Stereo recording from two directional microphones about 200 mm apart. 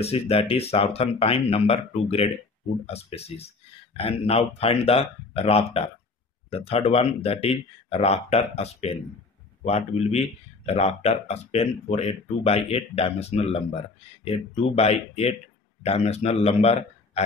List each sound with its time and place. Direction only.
0.0 s a man's voice: 30° left (ahead or behind)